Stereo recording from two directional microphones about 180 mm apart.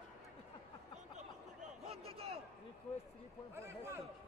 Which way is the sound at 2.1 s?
35° right (ahead or behind).